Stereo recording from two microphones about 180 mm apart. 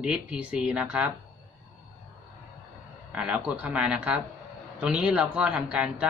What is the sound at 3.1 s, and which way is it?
A man's voice, 5° right (ahead or behind).